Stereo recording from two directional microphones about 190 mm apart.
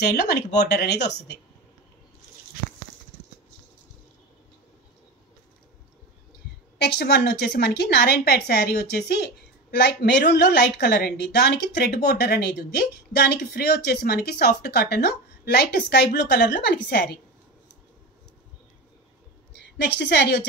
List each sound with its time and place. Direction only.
0.0 s a woman's voice: 55° left (ahead or behind)
6.8 s a woman's voice: 60° left (ahead or behind)
19.5 s a woman's voice: 65° left (ahead or behind)